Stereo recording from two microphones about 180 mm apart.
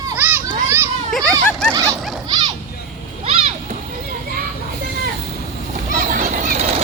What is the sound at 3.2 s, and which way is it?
Splash, 35° right (ahead or behind).